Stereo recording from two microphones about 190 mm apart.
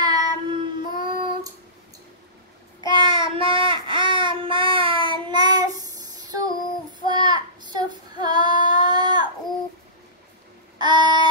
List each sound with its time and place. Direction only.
0.0 s child singing: 20° right (ahead or behind)
2.9 s child singing: 25° right (ahead or behind)
10.8 s child singing: 25° right (ahead or behind)